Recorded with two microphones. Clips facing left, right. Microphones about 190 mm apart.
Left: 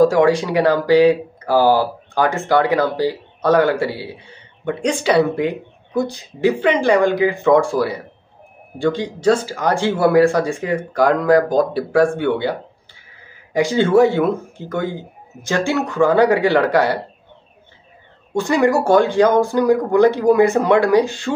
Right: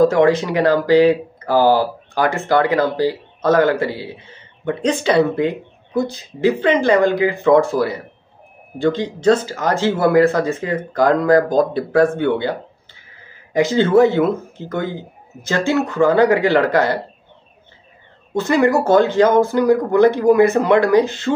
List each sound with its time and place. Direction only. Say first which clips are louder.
0.0 s speech: even; 10° left (ahead or behind)
2.1 s speech: even; 15° right (ahead or behind)
2.4 s speech: right 1 dB; 15° left (ahead or behind)
18.3 s speech: right 1 dB; 15° left (ahead or behind)